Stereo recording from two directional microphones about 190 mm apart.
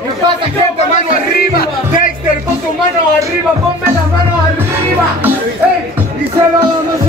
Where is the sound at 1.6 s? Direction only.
45° left (ahead or behind).